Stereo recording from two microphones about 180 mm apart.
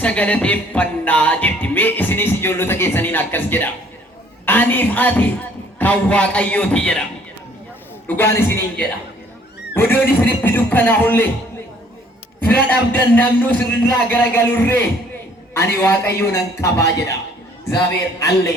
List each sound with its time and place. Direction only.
0.0 s music: 10° left (ahead or behind)
8.0 s music: 10° left (ahead or behind)
12.4 s music: 10° left (ahead or behind)